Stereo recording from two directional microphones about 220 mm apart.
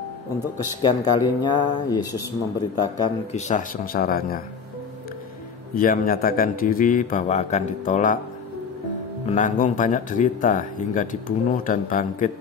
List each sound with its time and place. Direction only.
0.8 s speech: 20° left (ahead or behind)
3.3 s speech: 35° left (ahead or behind)
5.8 s speech: 40° left (ahead or behind)
9.3 s speech: 35° left (ahead or behind)